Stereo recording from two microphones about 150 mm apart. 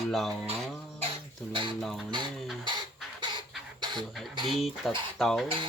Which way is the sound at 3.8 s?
30° right (ahead or behind).